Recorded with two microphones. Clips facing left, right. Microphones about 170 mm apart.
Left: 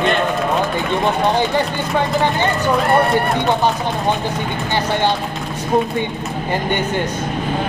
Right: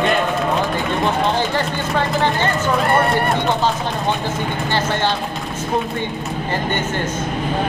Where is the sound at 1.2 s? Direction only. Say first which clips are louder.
Left 3 dB; 15° left (ahead or behind).